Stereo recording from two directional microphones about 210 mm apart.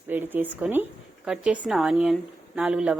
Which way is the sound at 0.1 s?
10° right (ahead or behind).